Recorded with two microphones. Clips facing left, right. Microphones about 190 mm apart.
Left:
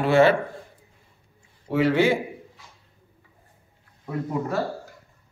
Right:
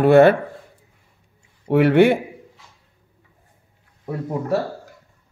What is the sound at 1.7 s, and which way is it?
Speech, 60° right (ahead or behind).